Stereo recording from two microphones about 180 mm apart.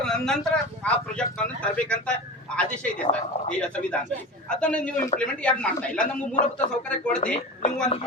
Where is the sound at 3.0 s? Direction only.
40° left (ahead or behind).